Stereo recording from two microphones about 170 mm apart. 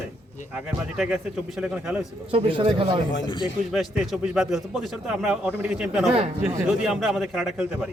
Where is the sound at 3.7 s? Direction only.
Centre (ahead or behind).